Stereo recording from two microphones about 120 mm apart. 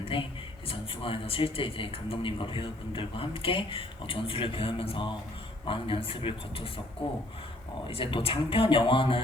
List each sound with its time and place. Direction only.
0.0 s a man's voice: 50° left (ahead or behind)
7.9 s a man's voice: 50° left (ahead or behind)